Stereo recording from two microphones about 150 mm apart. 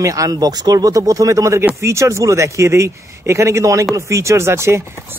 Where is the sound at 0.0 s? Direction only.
20° right (ahead or behind).